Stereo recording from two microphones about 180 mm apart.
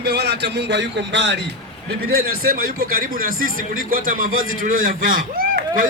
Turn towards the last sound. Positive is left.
turn(degrees=-50)  # may be behind; listen again after turning